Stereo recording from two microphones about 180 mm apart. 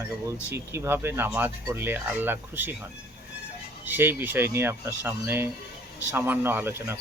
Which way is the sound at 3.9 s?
10° right (ahead or behind).